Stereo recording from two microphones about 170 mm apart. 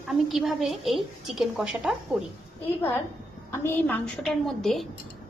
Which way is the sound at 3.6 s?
10° left (ahead or behind).